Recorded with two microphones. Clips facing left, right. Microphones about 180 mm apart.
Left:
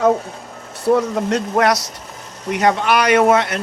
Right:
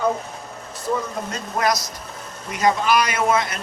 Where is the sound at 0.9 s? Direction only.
80° left.